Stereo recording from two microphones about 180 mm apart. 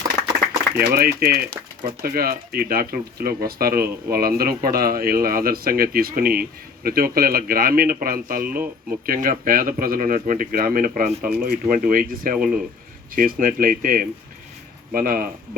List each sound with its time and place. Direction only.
0.8 s speech: 60° right (ahead or behind)